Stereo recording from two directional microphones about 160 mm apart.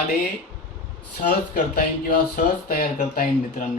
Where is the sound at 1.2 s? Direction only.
55° left (ahead or behind).